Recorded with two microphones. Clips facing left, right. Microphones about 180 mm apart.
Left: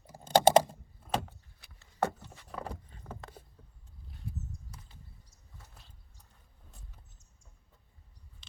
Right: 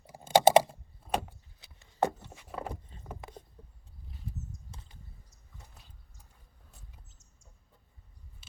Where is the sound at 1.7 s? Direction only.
15° right (ahead or behind).